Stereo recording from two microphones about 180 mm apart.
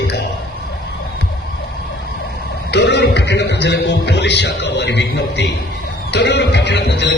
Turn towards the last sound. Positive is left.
turn(degrees=70)  # may be behind; listen again after turning